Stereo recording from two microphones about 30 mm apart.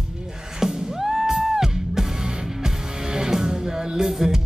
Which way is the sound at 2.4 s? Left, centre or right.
Centre.